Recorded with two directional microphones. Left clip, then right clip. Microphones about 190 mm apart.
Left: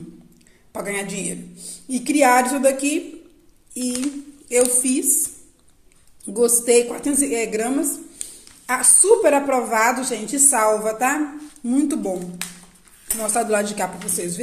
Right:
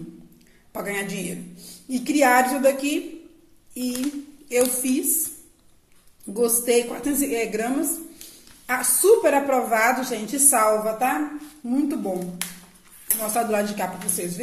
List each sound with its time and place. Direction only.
0.7 s a woman's voice: 20° left (ahead or behind)
8.3 s a sound: 20° left (ahead or behind)
9.0 s a woman's voice: 25° left (ahead or behind)
10.9 s a woman's voice: 35° left (ahead or behind)
13.3 s a woman's voice: 25° left (ahead or behind)